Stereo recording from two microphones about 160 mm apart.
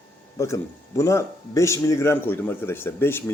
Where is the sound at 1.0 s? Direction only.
20° left (ahead or behind).